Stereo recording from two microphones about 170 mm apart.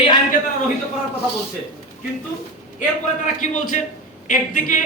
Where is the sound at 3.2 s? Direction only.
50° left (ahead or behind).